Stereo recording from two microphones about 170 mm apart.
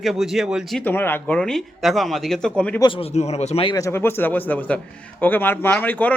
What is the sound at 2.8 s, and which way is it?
Speech, 30° left (ahead or behind).